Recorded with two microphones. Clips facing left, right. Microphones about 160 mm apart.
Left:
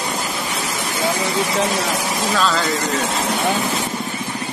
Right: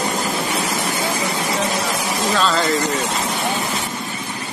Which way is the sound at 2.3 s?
Centre (ahead or behind).